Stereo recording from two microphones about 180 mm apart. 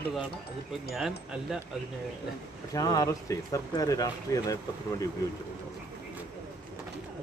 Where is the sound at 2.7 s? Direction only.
20° left (ahead or behind).